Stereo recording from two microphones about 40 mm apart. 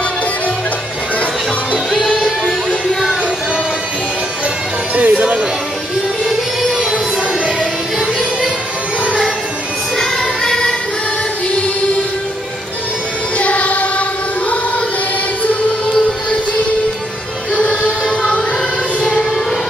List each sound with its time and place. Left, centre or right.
4.9 s music: right
9.9 s music: centre
13.4 s music: left